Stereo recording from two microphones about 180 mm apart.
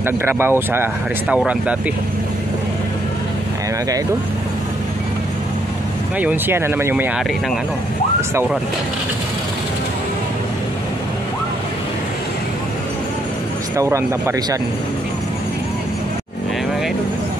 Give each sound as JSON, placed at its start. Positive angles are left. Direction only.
{"t": 0.0, "sound": "speech", "side_deg": -10}
{"t": 6.1, "sound": "speech", "side_deg": -10}
{"t": 13.7, "sound": "speech", "side_deg": -15}